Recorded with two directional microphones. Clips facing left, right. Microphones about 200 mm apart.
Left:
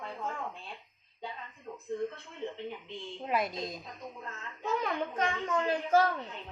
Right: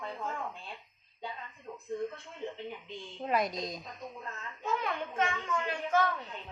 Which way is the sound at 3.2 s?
5° left (ahead or behind).